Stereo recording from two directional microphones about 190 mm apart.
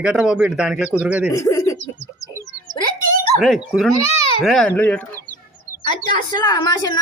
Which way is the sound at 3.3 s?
5° right (ahead or behind).